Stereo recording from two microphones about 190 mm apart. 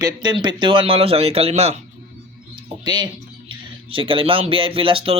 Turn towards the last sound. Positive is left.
turn(degrees=-30)  # may be behind; listen again after turning